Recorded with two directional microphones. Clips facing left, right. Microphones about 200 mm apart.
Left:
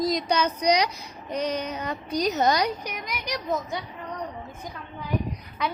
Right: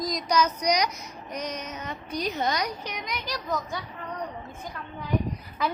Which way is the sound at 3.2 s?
20° left (ahead or behind).